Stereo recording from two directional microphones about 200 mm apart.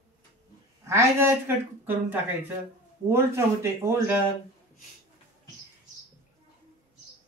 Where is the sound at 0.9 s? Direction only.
15° right (ahead or behind).